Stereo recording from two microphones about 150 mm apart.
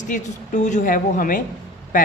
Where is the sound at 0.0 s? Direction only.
55° left (ahead or behind).